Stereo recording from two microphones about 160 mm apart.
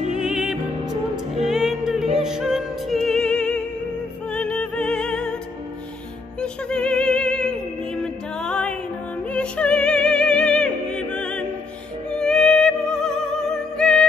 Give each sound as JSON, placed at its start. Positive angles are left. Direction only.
{"t": 0.1, "sound": "music", "side_deg": -5}
{"t": 6.4, "sound": "music", "side_deg": 5}